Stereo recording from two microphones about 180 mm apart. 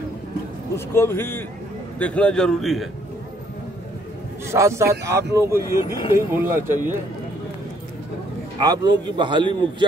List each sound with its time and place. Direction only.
0.7 s a man's voice: 15° left (ahead or behind)
4.5 s speech: 15° right (ahead or behind)
8.5 s a man's voice: 20° right (ahead or behind)